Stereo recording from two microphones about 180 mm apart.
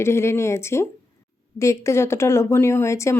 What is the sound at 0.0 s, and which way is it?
Speech, 15° left (ahead or behind).